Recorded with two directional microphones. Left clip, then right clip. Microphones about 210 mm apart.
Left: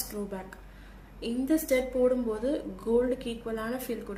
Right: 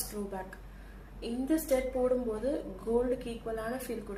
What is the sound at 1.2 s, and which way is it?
Speech, 40° left (ahead or behind).